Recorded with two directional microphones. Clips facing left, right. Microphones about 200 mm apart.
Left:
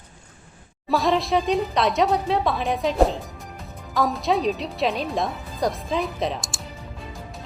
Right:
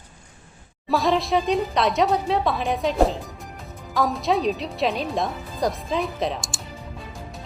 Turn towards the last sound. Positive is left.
turn(degrees=0)  # may be behind; listen again after turning